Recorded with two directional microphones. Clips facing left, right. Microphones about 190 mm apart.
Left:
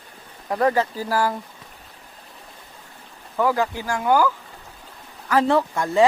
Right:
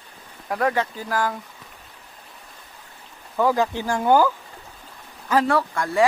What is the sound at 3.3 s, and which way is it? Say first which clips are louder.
Speech: right 1 dB; 15° right (ahead or behind).